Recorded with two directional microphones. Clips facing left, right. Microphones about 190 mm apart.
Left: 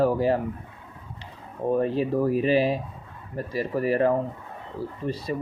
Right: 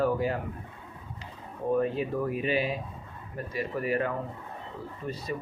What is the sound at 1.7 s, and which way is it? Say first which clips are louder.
Speech: left 5 dB; 35° left (ahead or behind).